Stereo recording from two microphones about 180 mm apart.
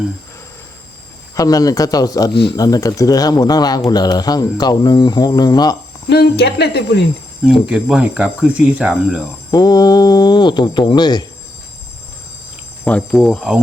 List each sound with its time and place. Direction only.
1.4 s speech: 20° left (ahead or behind)
6.1 s speech: 65° left (ahead or behind)
7.7 s speech: 5° right (ahead or behind)
9.5 s speech: 20° left (ahead or behind)
12.8 s cricket: 5° left (ahead or behind)